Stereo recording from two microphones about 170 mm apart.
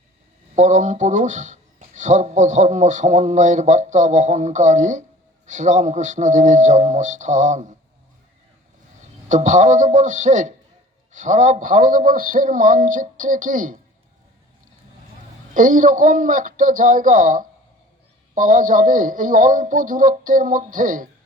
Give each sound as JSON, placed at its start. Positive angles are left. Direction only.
{"t": 0.5, "sound": "a man's voice", "side_deg": -45}
{"t": 9.3, "sound": "a man's voice", "side_deg": -45}
{"t": 15.5, "sound": "a man's voice", "side_deg": -50}